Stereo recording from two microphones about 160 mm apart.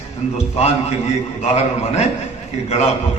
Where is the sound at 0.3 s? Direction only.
40° left (ahead or behind).